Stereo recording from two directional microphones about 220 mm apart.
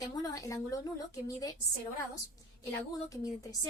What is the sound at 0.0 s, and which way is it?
A woman's voice, 15° left (ahead or behind).